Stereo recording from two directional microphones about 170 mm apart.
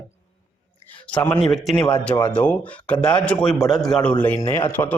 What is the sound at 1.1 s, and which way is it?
A man's voice, 10° left (ahead or behind).